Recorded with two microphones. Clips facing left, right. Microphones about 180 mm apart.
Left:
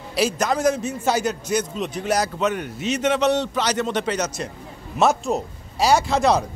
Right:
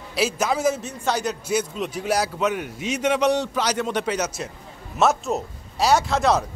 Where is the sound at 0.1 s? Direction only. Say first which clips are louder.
Left 1 dB; 5° right (ahead or behind).